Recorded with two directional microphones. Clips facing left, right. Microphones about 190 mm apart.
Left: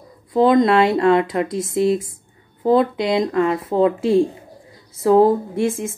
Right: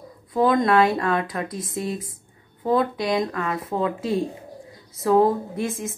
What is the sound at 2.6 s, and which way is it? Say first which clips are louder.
Speech: left 5 dB; 25° left (ahead or behind).